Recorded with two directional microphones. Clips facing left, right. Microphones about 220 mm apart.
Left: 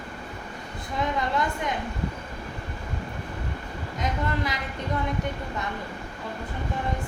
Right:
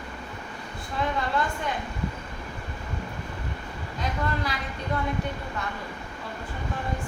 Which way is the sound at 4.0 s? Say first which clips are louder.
Left 1 dB; 20° left (ahead or behind).